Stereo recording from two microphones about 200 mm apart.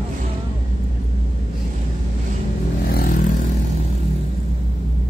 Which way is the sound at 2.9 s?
45° left (ahead or behind).